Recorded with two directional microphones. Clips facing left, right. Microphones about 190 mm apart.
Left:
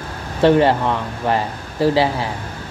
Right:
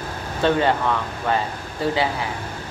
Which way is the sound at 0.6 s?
25° left (ahead or behind).